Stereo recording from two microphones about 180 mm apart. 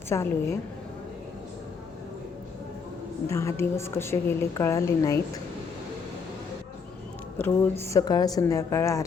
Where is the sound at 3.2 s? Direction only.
15° left (ahead or behind).